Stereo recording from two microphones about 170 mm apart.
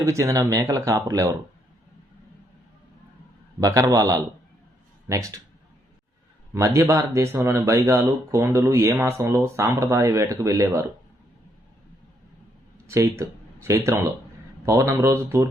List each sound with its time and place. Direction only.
0.0 s speech: 15° right (ahead or behind)
3.6 s speech: 20° right (ahead or behind)
6.5 s speech: 15° right (ahead or behind)
12.9 s speech: 15° right (ahead or behind)